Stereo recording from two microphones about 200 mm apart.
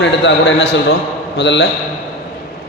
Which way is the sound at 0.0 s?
60° left (ahead or behind).